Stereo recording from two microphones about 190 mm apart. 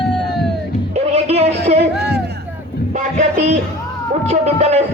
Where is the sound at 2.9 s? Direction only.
40° right (ahead or behind).